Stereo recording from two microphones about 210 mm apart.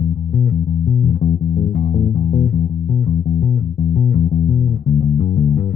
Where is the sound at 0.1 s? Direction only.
45° left (ahead or behind).